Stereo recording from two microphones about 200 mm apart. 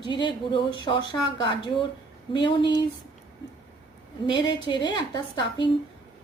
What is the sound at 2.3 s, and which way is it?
Speech, 25° left (ahead or behind).